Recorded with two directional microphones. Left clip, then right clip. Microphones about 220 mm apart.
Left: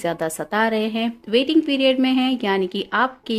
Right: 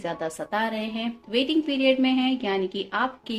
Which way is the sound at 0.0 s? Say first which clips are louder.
Left 6 dB; 50° left (ahead or behind).